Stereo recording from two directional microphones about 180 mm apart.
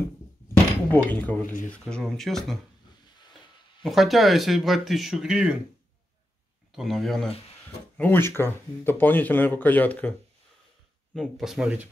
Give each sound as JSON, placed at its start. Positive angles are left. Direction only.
{"t": 0.9, "sound": "speech", "side_deg": 10}
{"t": 3.8, "sound": "speech", "side_deg": 0}
{"t": 6.7, "sound": "speech", "side_deg": 0}
{"t": 8.0, "sound": "speech", "side_deg": 10}
{"t": 11.1, "sound": "speech", "side_deg": 0}